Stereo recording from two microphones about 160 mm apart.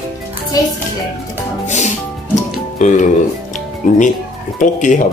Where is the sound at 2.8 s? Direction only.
50° left (ahead or behind).